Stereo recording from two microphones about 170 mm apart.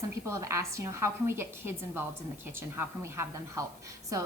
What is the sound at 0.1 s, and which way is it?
A woman's voice, 15° right (ahead or behind).